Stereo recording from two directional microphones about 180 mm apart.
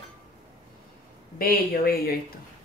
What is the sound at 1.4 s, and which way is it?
Speech, 55° left (ahead or behind).